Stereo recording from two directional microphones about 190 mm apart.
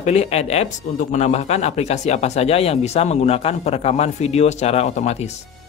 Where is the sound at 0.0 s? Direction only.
35° left (ahead or behind).